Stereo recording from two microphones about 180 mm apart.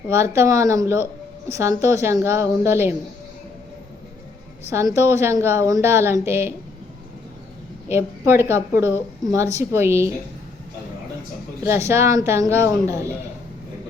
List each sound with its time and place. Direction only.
0.1 s a woman's voice: 15° right (ahead or behind)
4.7 s a woman's voice: 15° right (ahead or behind)
7.9 s a woman's voice: 15° right (ahead or behind)
11.6 s a woman's voice: 15° right (ahead or behind)